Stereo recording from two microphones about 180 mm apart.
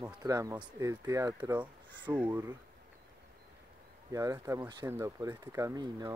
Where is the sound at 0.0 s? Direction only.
20° right (ahead or behind).